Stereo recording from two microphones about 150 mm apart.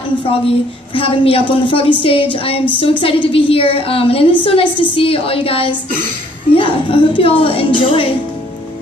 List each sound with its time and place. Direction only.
0.9 s a woman's voice: 35° left (ahead or behind)